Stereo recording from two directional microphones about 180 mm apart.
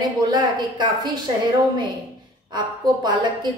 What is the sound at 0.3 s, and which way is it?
Speech, 25° right (ahead or behind).